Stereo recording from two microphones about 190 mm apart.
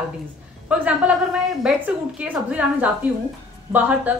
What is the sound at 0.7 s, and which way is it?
A man's voice, 5° right (ahead or behind).